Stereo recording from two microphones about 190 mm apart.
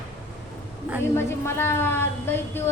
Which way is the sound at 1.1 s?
10° left (ahead or behind).